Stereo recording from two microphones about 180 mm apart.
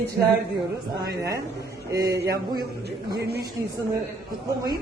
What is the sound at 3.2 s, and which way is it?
Speech, 60° right (ahead or behind).